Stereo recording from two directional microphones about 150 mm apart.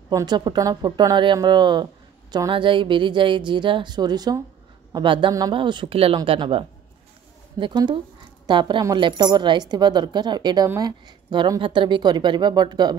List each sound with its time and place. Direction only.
0.1 s a woman's voice: 25° right (ahead or behind)